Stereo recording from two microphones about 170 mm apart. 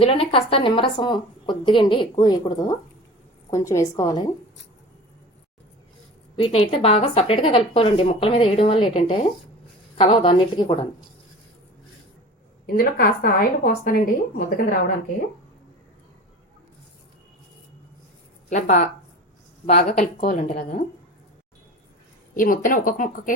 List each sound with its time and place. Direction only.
0.0 s a woman's voice: 35° left (ahead or behind)
6.3 s a woman's voice: 35° left (ahead or behind)
12.6 s a woman's voice: 60° left (ahead or behind)
18.4 s speech: 45° left (ahead or behind)
20.0 s speech: 45° left (ahead or behind)
22.4 s speech: 55° left (ahead or behind)